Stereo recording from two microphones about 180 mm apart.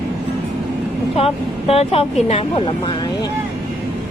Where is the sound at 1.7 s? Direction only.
35° left (ahead or behind).